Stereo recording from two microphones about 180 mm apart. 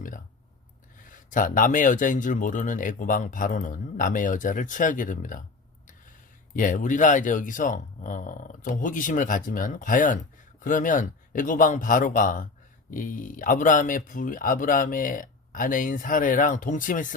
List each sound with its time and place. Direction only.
1.0 s speech: 45° left (ahead or behind)
6.6 s speech: 45° left (ahead or behind)